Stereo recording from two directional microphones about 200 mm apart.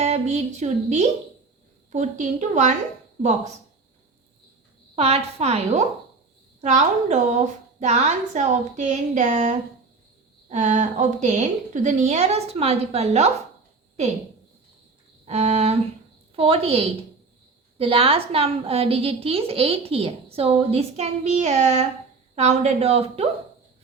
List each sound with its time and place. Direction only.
0.0 s a woman's voice: 35° right (ahead or behind)
4.9 s a woman's voice: 30° right (ahead or behind)
10.5 s a woman's voice: 35° right (ahead or behind)
15.3 s a woman's voice: 35° right (ahead or behind)